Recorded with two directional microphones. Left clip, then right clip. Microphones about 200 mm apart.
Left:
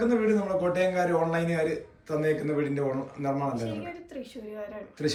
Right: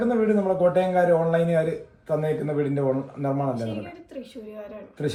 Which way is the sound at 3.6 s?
Centre (ahead or behind).